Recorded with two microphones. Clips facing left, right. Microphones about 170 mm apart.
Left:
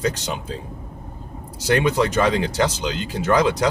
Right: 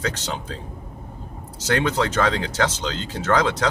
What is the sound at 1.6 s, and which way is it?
Speech, 15° left (ahead or behind).